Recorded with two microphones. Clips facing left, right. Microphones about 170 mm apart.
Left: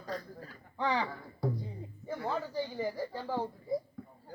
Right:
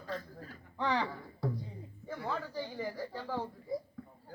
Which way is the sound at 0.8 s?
5° left (ahead or behind).